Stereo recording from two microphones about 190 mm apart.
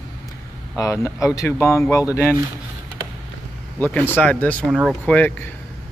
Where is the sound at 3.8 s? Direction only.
10° left (ahead or behind).